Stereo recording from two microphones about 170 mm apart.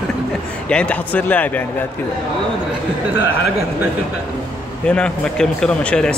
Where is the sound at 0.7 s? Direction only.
10° left (ahead or behind).